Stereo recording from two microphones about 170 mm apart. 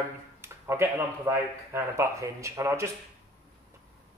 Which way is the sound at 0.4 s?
15° right (ahead or behind).